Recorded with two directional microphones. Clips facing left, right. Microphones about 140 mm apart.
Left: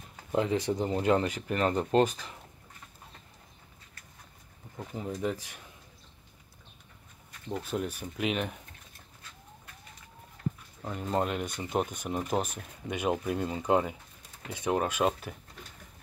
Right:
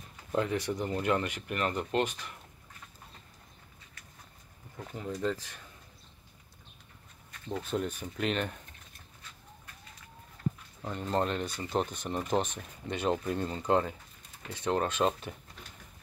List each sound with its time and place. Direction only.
0.3 s speech: 25° left (ahead or behind)
4.7 s speech: 15° left (ahead or behind)
7.5 s speech: 5° left (ahead or behind)
10.8 s speech: 5° left (ahead or behind)